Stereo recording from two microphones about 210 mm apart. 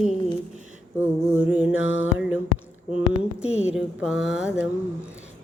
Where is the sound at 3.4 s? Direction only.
5° right (ahead or behind).